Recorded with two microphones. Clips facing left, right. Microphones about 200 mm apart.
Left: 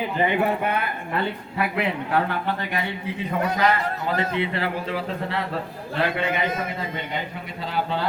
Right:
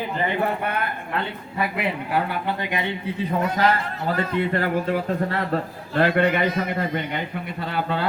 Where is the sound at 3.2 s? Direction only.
35° right (ahead or behind).